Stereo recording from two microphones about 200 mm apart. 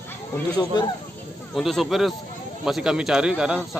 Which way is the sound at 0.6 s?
20° left (ahead or behind).